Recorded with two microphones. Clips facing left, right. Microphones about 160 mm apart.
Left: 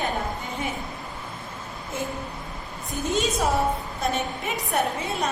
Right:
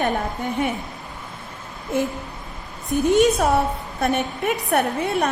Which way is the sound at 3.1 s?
60° right (ahead or behind).